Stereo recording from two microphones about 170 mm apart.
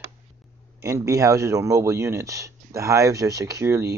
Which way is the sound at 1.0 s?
20° right (ahead or behind).